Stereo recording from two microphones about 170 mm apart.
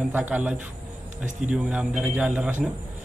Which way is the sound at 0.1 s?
10° right (ahead or behind).